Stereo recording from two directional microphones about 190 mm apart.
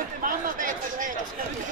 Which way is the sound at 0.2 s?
45° right (ahead or behind).